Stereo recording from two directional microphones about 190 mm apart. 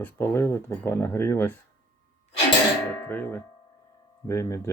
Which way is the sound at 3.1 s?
10° left (ahead or behind).